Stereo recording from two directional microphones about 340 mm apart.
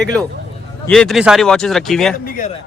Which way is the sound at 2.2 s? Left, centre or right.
Left.